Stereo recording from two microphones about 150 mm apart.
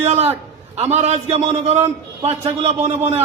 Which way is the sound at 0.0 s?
45° right (ahead or behind).